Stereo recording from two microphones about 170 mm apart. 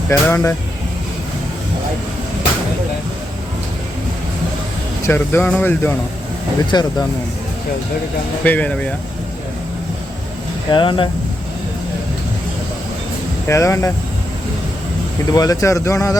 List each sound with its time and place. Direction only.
0.1 s speech: 15° left (ahead or behind)
5.0 s speech: 10° left (ahead or behind)
6.7 s speech: 25° left (ahead or behind)
8.4 s speech: 10° left (ahead or behind)
10.7 s speech: 25° left (ahead or behind)
13.5 s speech: 15° left (ahead or behind)
15.3 s speech: 20° left (ahead or behind)